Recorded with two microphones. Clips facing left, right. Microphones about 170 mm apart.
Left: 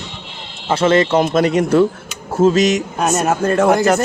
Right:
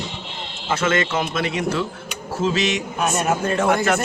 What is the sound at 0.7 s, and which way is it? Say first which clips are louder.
A man's voice: left 8 dB; 30° left (ahead or behind).